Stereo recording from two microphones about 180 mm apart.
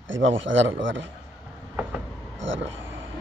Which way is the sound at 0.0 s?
90° right.